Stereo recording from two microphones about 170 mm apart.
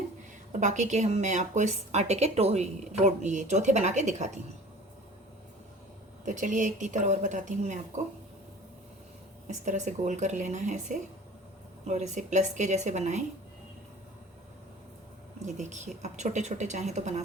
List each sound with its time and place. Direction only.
0.6 s a woman's voice: 45° right (ahead or behind)
6.2 s a woman's voice: 50° right (ahead or behind)
9.5 s a woman's voice: 45° right (ahead or behind)
15.4 s a woman's voice: 45° right (ahead or behind)